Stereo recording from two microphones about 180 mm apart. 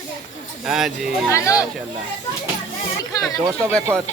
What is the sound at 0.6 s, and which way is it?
Speech, centre (ahead or behind).